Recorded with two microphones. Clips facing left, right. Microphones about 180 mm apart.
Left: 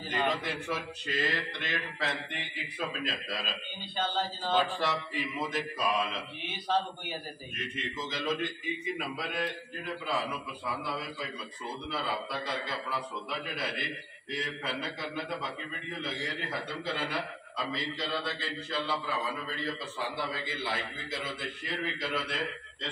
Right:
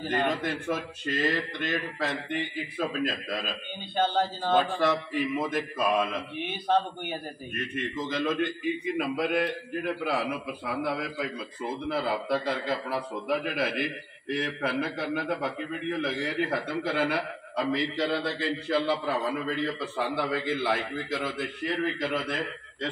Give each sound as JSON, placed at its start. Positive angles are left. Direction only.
{"t": 0.0, "sound": "a man's voice", "side_deg": -50}